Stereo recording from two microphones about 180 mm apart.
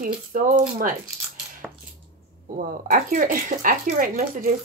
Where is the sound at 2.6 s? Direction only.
45° right (ahead or behind).